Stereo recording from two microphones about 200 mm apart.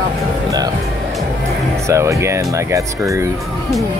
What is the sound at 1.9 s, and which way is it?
Speech, 15° right (ahead or behind).